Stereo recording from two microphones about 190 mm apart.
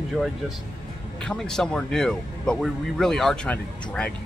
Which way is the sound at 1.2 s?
5° left (ahead or behind).